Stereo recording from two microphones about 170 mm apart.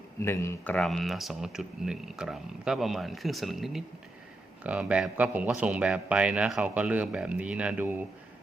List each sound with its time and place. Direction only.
0.2 s a man's voice: 15° left (ahead or behind); by 8.0 s 10° right (ahead or behind)